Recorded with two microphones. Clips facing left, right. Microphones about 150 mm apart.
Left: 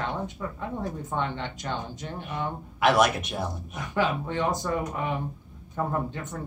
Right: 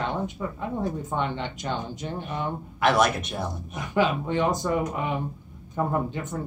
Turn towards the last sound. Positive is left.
turn(degrees=-15)  # may be behind; listen again after turning